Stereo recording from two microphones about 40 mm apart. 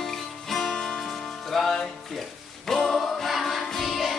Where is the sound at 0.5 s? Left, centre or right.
Centre.